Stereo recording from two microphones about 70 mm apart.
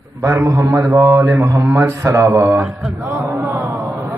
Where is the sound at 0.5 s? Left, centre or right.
Right.